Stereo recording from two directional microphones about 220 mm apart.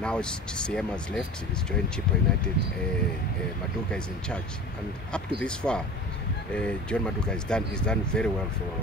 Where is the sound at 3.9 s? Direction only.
5° left (ahead or behind).